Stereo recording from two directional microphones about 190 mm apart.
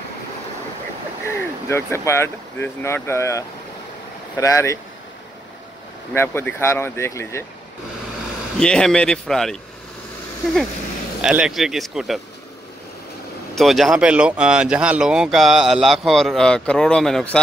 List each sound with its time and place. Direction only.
1.2 s speech: 15° left (ahead or behind)
6.1 s speech: 10° left (ahead or behind)
8.5 s speech: 5° left (ahead or behind)
11.1 s speech: 5° right (ahead or behind)
13.6 s speech: centre (ahead or behind)